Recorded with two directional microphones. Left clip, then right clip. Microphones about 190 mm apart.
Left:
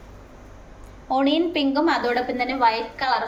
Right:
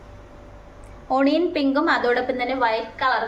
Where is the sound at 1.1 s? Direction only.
25° right (ahead or behind).